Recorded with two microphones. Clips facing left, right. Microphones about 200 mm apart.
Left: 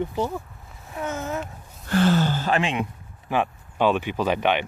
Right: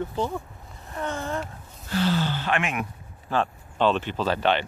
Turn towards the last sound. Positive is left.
turn(degrees=15)  # may be behind; listen again after turning